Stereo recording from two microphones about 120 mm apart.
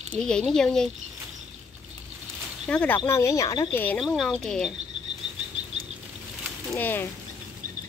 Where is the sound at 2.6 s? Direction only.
10° left (ahead or behind).